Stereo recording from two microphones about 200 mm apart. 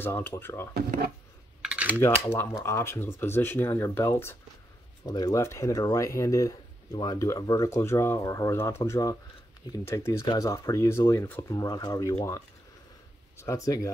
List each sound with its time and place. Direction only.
0.0 s speech: 10° left (ahead or behind)
0.7 s speech: 50° right (ahead or behind)
1.6 s typing: 5° right (ahead or behind)
2.0 s speech: 10° left (ahead or behind)